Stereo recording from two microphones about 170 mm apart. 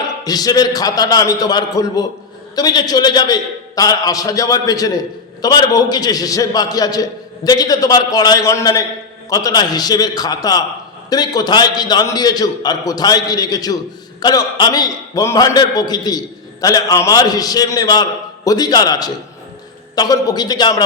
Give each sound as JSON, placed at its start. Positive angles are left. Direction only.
{"t": 0.3, "sound": "a man's voice", "side_deg": 20}